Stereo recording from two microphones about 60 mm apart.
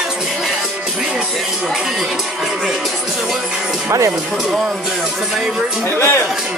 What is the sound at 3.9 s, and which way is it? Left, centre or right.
Speech, right.